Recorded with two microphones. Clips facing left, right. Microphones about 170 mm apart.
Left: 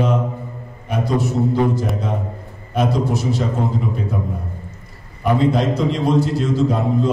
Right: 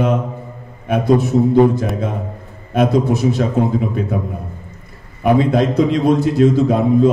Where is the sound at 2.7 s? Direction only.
55° right (ahead or behind).